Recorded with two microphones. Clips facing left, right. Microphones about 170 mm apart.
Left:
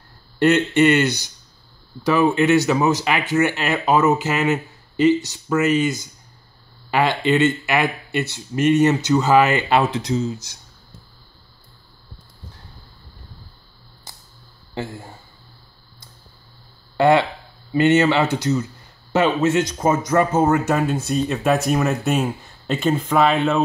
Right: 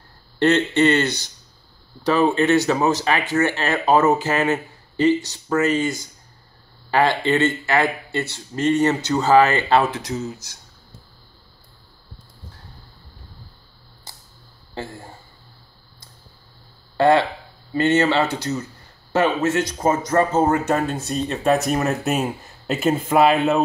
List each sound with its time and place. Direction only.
0.4 s speech: 10° left (ahead or behind)
2.3 s speech: 15° left (ahead or behind)
14.7 s speech: 15° left (ahead or behind)
16.9 s speech: 15° left (ahead or behind)
20.6 s speech: 5° left (ahead or behind)